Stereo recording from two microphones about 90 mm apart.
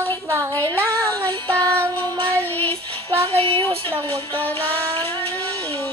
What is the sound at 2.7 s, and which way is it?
Music, 90° right.